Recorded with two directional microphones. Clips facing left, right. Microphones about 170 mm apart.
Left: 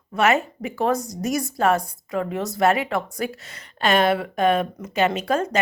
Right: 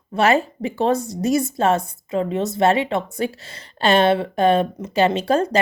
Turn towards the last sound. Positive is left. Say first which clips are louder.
# right 4 dB
turn(degrees=-30)  # may be behind; listen again after turning